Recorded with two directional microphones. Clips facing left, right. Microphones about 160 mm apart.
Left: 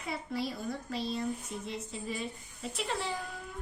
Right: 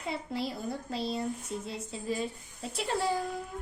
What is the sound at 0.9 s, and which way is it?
Speech, 30° right (ahead or behind).